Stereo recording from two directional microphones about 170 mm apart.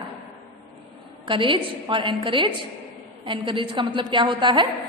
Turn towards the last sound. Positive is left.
turn(degrees=-30)  # may be behind; listen again after turning